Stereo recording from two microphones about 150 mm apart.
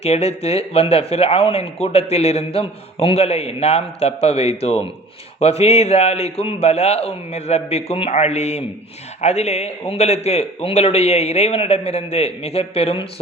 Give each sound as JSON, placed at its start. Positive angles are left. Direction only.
{"t": 0.0, "sound": "speech", "side_deg": 45}